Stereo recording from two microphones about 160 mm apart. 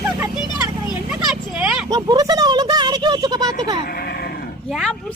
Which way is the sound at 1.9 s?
25° right (ahead or behind).